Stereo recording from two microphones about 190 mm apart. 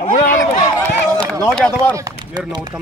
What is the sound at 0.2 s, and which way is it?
Run, 45° left (ahead or behind).